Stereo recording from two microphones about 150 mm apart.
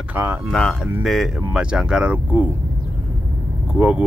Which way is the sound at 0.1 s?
15° right (ahead or behind).